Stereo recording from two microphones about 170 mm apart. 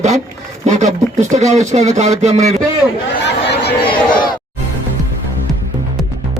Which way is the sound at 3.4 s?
75° left (ahead or behind).